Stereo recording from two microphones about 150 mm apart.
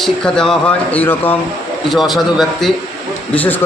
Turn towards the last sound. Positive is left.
turn(degrees=10)  # may be behind; listen again after turning